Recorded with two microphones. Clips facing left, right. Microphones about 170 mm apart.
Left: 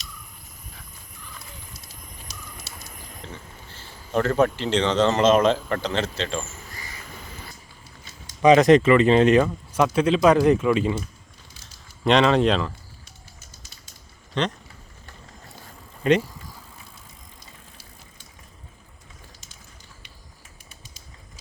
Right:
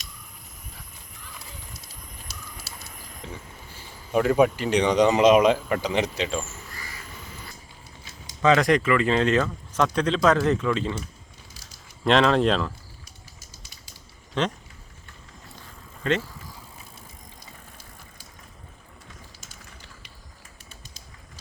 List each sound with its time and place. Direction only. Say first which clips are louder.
2.6 s speech: left 1 dB; 5° right (ahead or behind)
8.4 s speech: left 6 dB; 20° left (ahead or behind)
12.0 s speech: left 1 dB; centre (ahead or behind)
14.4 s speech: even; 5° right (ahead or behind)
16.0 s speech: left 6 dB; 15° left (ahead or behind)